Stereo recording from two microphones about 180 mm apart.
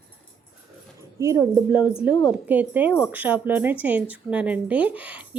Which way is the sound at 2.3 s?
10° right (ahead or behind).